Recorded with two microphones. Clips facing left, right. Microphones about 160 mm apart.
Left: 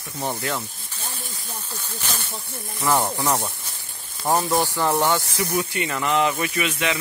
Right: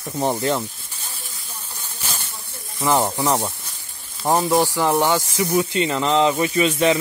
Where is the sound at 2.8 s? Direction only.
20° right (ahead or behind).